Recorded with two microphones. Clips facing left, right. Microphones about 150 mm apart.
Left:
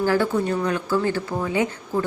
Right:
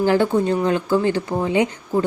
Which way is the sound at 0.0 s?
20° right (ahead or behind).